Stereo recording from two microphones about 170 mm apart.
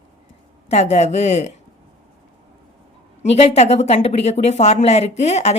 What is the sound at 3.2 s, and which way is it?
A woman's voice, 40° left (ahead or behind).